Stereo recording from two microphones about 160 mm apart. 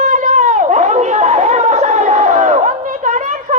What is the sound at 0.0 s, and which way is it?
Chatter, 50° right (ahead or behind).